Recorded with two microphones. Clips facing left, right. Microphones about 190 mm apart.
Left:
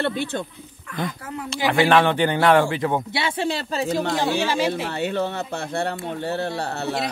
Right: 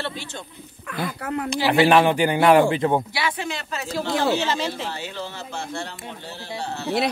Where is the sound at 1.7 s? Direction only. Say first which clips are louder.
Right 1 dB; 15° right (ahead or behind).